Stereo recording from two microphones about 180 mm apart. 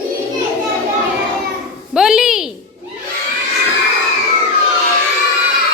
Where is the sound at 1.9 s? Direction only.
5° right (ahead or behind).